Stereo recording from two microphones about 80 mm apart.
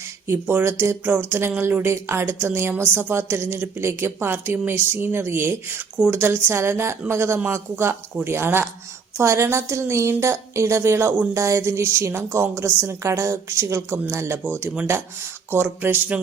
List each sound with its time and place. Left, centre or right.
0.3 s a woman's voice: right
15.4 s a woman's voice: right